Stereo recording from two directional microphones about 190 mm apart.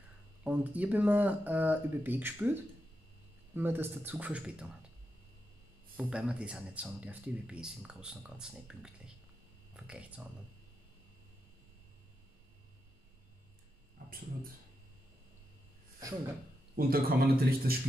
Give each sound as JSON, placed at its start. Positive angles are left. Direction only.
{"t": 0.4, "sound": "speech", "side_deg": -10}
{"t": 6.0, "sound": "speech", "side_deg": -5}
{"t": 14.0, "sound": "a sound", "side_deg": -45}
{"t": 16.7, "sound": "a man's voice", "side_deg": -50}